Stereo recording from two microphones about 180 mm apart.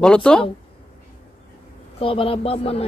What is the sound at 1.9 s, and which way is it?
Speech, 30° left (ahead or behind).